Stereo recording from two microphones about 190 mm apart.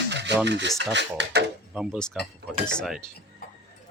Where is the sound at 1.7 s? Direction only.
5° right (ahead or behind).